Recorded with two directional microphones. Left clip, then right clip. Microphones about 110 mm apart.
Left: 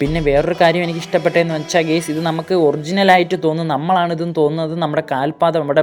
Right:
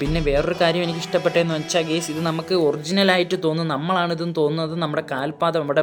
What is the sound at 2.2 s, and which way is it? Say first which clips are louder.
Speech: left 4 dB; 35° left (ahead or behind).